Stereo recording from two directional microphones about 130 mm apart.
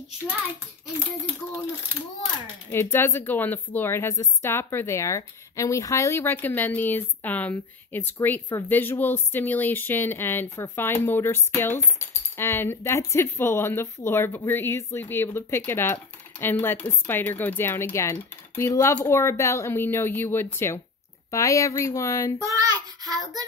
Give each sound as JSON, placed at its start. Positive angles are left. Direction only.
{"t": 2.7, "sound": "a woman's voice", "side_deg": 20}
{"t": 22.4, "sound": "child singing", "side_deg": -25}